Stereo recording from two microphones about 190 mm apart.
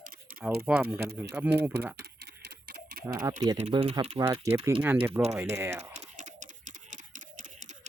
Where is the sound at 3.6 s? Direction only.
30° right (ahead or behind).